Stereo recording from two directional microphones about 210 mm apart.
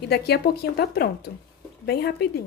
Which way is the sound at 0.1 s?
50° left (ahead or behind).